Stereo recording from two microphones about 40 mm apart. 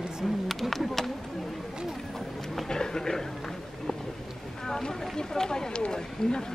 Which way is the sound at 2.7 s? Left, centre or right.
Centre.